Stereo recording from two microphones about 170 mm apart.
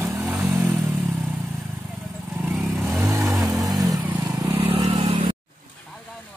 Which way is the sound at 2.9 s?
15° right (ahead or behind).